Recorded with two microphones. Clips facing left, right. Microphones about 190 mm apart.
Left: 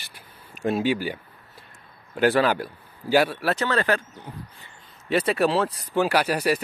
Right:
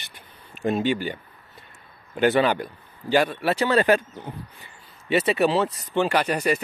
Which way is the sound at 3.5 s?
15° right (ahead or behind).